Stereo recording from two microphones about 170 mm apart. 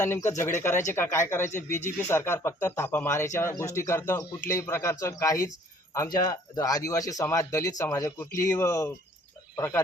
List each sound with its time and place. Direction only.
0.0 s speech: 15° left (ahead or behind)